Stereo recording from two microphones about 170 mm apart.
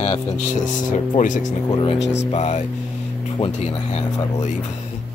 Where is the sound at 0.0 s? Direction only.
35° left (ahead or behind).